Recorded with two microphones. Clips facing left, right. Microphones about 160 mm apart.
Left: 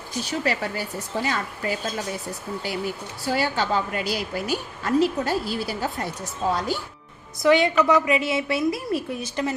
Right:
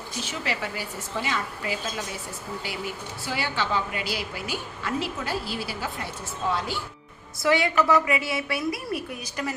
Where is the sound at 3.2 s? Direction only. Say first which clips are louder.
Left 5 dB; 45° left (ahead or behind).